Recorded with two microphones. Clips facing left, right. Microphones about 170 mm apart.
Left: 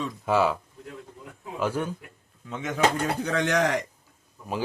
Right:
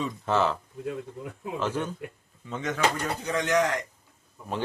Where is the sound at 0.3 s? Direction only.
10° left (ahead or behind).